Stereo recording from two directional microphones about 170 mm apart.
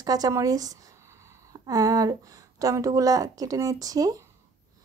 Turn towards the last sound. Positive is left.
turn(degrees=-20)  # may be behind; listen again after turning